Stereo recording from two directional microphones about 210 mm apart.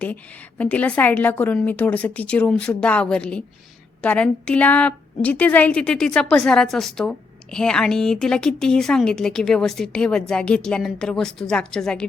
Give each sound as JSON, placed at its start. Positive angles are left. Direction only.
{"t": 0.6, "sound": "a woman's voice", "side_deg": 5}